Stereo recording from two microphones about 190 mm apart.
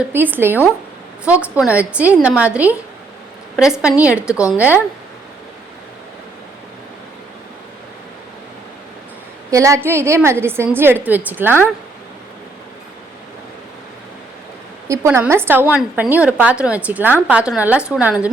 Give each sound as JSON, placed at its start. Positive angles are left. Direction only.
{"t": 0.1, "sound": "a woman's voice", "side_deg": -10}
{"t": 9.5, "sound": "a woman's voice", "side_deg": -15}
{"t": 14.8, "sound": "a woman's voice", "side_deg": -10}